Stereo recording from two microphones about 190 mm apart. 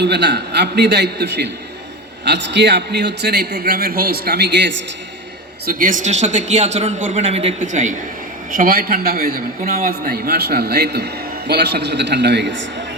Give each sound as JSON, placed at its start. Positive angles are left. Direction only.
{"t": 0.0, "sound": "a man's voice", "side_deg": -65}
{"t": 5.6, "sound": "a man's voice", "side_deg": -45}